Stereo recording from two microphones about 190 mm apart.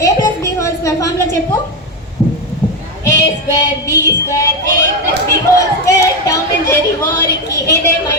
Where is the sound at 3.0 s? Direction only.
15° left (ahead or behind).